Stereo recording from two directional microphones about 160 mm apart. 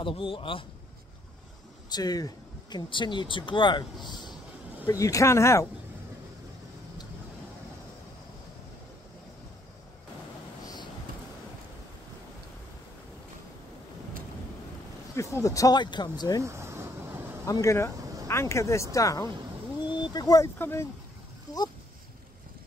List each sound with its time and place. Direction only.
0.0 s a man's voice: 35° left (ahead or behind)
1.9 s speech: 25° left (ahead or behind)
15.3 s speech: 20° left (ahead or behind)
16.4 s a sound: 15° right (ahead or behind)
17.5 s speech: 20° left (ahead or behind)